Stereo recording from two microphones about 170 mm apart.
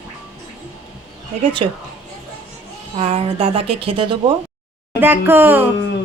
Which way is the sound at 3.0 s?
35° right (ahead or behind).